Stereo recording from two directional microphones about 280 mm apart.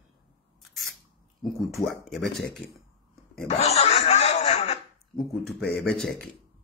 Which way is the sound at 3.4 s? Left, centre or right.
Left.